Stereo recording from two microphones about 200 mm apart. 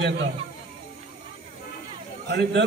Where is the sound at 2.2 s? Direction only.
55° right (ahead or behind).